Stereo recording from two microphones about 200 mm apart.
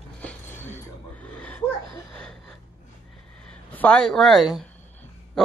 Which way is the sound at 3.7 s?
10° left (ahead or behind).